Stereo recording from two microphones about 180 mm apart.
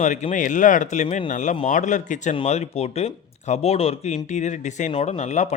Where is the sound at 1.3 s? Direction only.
45° left (ahead or behind).